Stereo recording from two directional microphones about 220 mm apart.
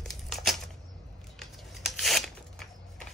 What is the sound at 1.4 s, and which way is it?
Tearing, centre (ahead or behind).